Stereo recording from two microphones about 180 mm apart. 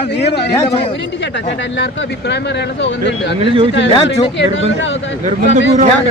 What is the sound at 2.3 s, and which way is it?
Speech, 70° left (ahead or behind).